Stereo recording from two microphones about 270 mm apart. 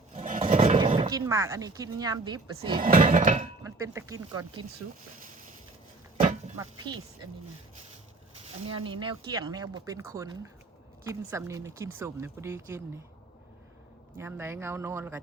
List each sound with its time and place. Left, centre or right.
0.1 s speech: right
2.8 s a sound: right
3.6 s speech: centre
6.6 s speech: centre
8.4 s speech: centre
14.2 s speech: centre